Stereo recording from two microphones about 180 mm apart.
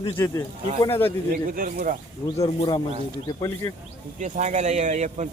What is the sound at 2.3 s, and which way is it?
Speech, 25° left (ahead or behind).